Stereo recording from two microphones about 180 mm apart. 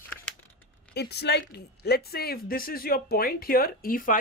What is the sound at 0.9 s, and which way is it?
Speech, 65° left (ahead or behind).